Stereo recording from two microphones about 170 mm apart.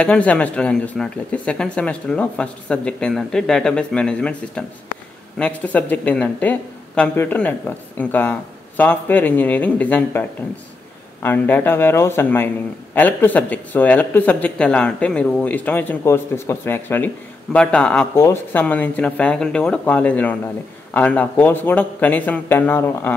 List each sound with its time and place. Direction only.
0.0 s speech: 5° left (ahead or behind)
11.2 s speech: 10° left (ahead or behind)